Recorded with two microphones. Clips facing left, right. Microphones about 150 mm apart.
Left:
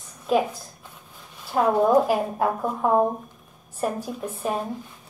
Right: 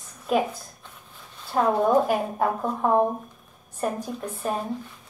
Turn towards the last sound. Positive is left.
turn(degrees=5)  # may be behind; listen again after turning